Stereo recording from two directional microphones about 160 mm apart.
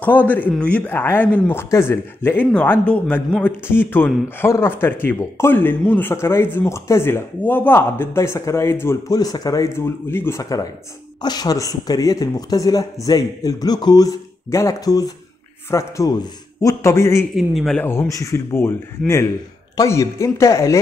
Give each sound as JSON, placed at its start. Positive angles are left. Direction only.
{"t": 0.0, "sound": "speech", "side_deg": 10}
{"t": 17.4, "sound": "speech", "side_deg": 0}
{"t": 17.8, "sound": "speech", "side_deg": 20}